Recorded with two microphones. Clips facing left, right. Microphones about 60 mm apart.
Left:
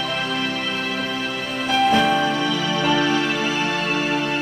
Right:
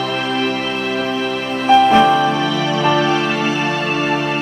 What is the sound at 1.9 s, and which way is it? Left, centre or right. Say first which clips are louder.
Music: right 6 dB; right.